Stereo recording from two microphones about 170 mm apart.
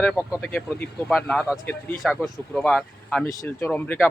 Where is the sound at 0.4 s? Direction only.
5° left (ahead or behind).